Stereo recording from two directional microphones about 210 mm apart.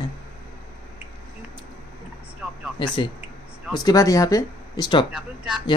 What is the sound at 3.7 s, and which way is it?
Speech, 20° left (ahead or behind).